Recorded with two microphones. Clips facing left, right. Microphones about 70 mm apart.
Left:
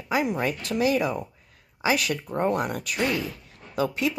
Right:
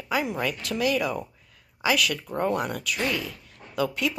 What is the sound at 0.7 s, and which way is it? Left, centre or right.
Speech, left.